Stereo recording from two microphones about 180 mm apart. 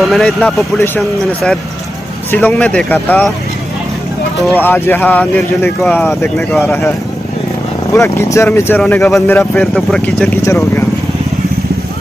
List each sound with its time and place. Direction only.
0.1 s speech: 5° left (ahead or behind)
4.6 s speech: 10° left (ahead or behind)
7.9 s speech: 15° left (ahead or behind)